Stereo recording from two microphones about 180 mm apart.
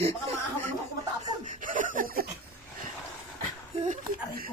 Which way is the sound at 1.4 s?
45° right (ahead or behind).